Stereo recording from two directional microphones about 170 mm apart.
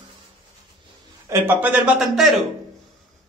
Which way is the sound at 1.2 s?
15° right (ahead or behind).